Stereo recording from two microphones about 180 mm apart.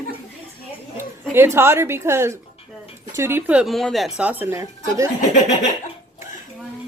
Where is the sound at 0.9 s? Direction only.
10° right (ahead or behind).